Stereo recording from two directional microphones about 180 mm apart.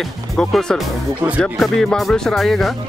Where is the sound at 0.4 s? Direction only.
5° left (ahead or behind).